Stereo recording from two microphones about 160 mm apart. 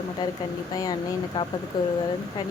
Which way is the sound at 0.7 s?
25° left (ahead or behind).